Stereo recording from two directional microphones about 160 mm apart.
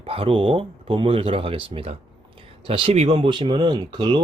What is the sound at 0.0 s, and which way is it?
Speech, 35° right (ahead or behind).